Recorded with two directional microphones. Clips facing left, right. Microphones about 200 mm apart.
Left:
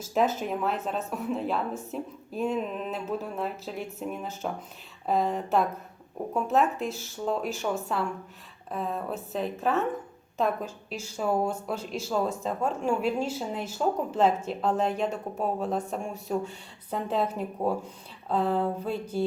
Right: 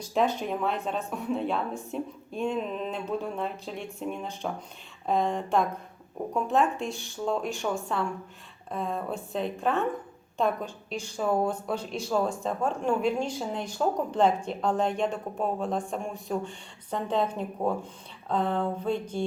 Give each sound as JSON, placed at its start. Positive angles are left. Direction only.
{"t": 0.0, "sound": "speech", "side_deg": 5}